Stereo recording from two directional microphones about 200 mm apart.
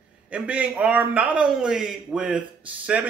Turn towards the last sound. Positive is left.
turn(degrees=-5)  # may be behind; listen again after turning